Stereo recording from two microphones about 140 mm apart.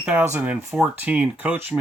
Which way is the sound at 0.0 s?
10° right (ahead or behind).